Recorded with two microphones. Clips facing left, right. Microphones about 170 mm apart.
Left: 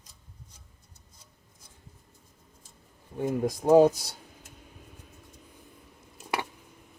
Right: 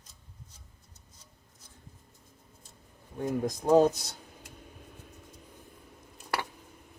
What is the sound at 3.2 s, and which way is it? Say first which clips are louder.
Speech: left 3 dB; 5° left (ahead or behind).